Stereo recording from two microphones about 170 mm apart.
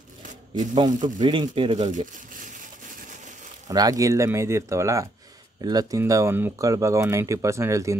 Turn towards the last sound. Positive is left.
turn(degrees=-20)  # may be behind; listen again after turning